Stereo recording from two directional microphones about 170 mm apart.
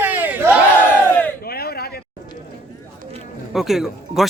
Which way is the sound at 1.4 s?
65° left (ahead or behind).